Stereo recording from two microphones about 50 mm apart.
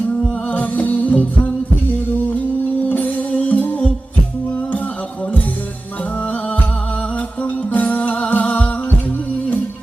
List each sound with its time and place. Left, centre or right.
0.2 s music: left
2.9 s music: left